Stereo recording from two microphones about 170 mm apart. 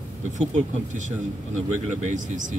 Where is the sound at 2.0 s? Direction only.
45° right (ahead or behind).